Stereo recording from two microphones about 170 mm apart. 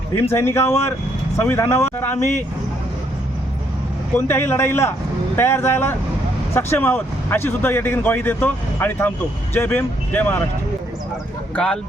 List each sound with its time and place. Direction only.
0.3 s speech: 15° left (ahead or behind)
4.3 s speech: 15° left (ahead or behind)
11.5 s speech: 5° left (ahead or behind)